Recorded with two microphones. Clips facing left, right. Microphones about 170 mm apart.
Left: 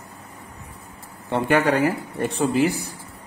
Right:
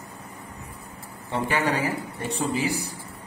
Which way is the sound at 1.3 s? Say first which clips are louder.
Left 6 dB; 60° left (ahead or behind).